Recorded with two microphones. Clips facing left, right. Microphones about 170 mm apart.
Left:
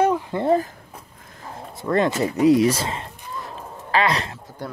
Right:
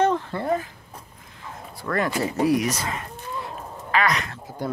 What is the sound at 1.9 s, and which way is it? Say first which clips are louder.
Speech: left 4 dB; 20° left (ahead or behind).